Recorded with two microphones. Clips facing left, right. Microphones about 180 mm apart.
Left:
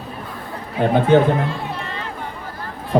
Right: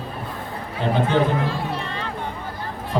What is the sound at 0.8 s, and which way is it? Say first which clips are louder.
Speech: left 5 dB; 55° left (ahead or behind).